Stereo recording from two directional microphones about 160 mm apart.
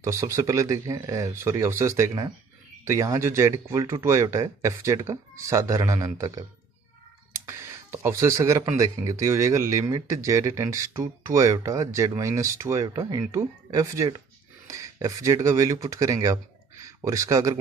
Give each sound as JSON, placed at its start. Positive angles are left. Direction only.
{"t": 0.0, "sound": "speech", "side_deg": -20}